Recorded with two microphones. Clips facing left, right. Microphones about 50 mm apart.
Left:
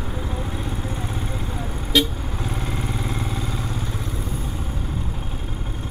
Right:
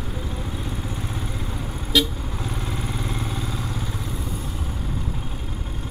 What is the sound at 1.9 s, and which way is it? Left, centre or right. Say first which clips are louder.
Vehicle: left 1 dB; centre.